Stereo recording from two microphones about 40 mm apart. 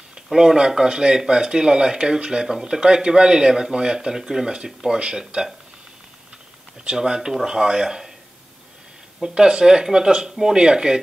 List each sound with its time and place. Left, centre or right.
0.3 s speech: centre
7.0 s speech: centre
9.2 s speech: right